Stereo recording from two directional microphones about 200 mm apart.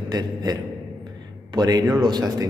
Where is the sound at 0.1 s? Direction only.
20° right (ahead or behind).